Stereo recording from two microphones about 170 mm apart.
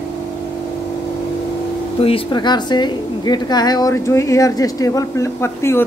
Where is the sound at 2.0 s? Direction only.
30° left (ahead or behind).